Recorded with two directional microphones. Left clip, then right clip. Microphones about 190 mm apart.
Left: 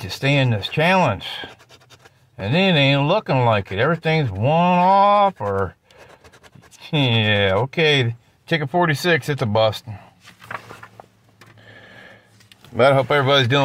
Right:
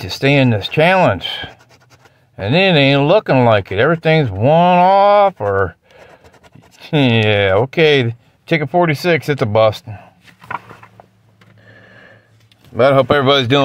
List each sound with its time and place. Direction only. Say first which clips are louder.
0.0 s speech: right 6 dB; 45° right (ahead or behind)
6.8 s speech: right 6 dB; 45° right (ahead or behind)
11.6 s a sound: right 1 dB; 5° right (ahead or behind)
12.9 s speech: right 5 dB; 40° right (ahead or behind)